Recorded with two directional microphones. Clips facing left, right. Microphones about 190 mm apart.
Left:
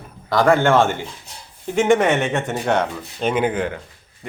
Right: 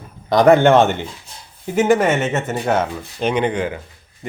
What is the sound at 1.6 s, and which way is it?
Speech, 5° right (ahead or behind).